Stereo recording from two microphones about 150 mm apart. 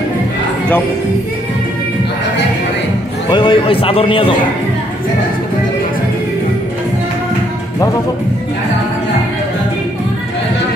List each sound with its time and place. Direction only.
3.3 s a man's voice: 30° left (ahead or behind)